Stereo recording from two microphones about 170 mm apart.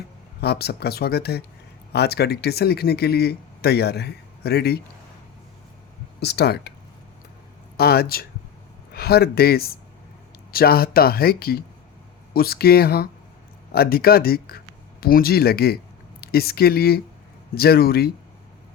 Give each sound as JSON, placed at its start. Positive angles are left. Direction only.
{"t": 0.4, "sound": "speech", "side_deg": 70}
{"t": 6.1, "sound": "speech", "side_deg": 75}
{"t": 7.8, "sound": "speech", "side_deg": 65}